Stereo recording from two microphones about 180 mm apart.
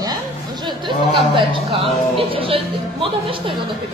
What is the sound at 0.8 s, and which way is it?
Speech, 30° right (ahead or behind).